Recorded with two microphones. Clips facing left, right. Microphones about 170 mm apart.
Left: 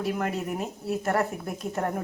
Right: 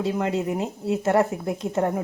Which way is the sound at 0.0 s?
25° right (ahead or behind).